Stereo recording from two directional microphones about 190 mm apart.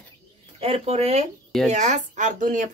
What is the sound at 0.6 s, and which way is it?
Speech, 30° right (ahead or behind).